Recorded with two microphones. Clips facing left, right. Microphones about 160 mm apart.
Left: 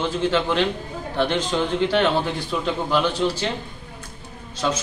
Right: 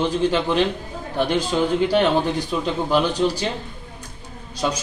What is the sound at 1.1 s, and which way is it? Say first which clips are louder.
A man's voice: right 1 dB; 10° right (ahead or behind).